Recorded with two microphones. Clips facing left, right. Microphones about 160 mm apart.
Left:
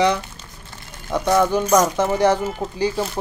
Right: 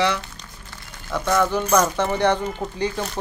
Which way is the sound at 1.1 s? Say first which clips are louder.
Left 3 dB; 20° left (ahead or behind).